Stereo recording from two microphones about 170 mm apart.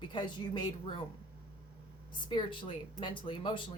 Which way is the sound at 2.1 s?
30° left (ahead or behind).